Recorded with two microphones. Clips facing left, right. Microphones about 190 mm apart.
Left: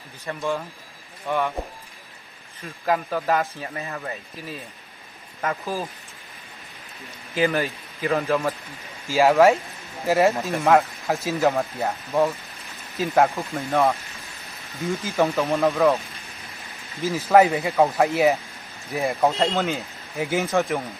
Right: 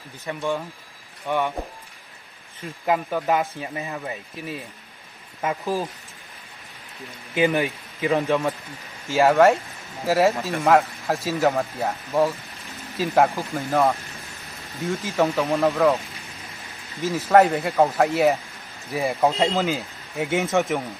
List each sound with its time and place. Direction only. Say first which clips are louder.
0.3 s speech: right 1 dB; 10° right (ahead or behind)
2.8 s speech: right 1 dB; 10° right (ahead or behind)
5.6 s speech: right 3 dB; centre (ahead or behind)
7.3 s a man's voice: right 1 dB; 15° right (ahead or behind)
8.1 s speech: right 1 dB; centre (ahead or behind)
17.0 s speech: even; centre (ahead or behind)